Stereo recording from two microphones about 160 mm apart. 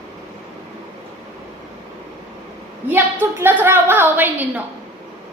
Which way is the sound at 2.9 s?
15° right (ahead or behind).